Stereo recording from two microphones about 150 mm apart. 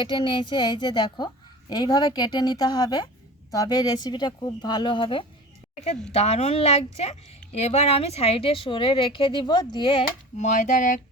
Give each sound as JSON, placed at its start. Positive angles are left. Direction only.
{"t": 0.0, "sound": "speech", "side_deg": 35}
{"t": 10.3, "sound": "speech", "side_deg": 55}